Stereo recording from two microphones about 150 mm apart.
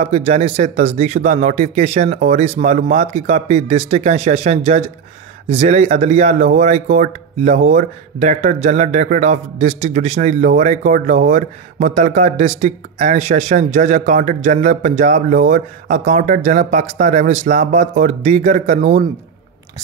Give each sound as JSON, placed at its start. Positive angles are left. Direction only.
{"t": 0.0, "sound": "speech", "side_deg": -50}